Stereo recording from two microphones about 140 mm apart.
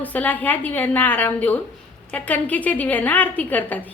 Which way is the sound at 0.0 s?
10° left (ahead or behind).